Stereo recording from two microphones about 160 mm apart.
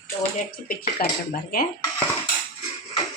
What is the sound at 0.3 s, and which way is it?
Speech, 65° left (ahead or behind).